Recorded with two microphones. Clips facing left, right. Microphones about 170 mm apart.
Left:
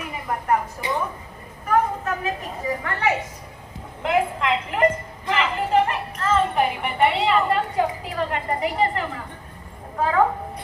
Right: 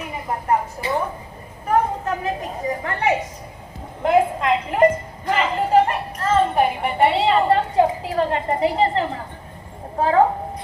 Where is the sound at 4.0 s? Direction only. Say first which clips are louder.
Right 4 dB; 35° right (ahead or behind).